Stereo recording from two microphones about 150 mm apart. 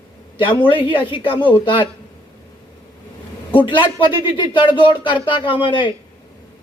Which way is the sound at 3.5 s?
30° left (ahead or behind).